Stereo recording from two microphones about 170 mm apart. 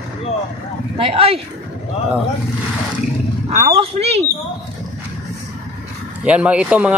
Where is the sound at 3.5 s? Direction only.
45° right (ahead or behind).